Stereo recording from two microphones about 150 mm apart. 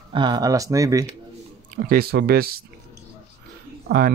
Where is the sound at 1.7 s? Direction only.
85° right.